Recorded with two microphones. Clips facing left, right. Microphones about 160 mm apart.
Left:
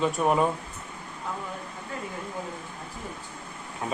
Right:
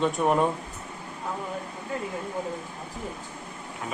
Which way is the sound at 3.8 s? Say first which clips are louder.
Left 3 dB; 35° left (ahead or behind).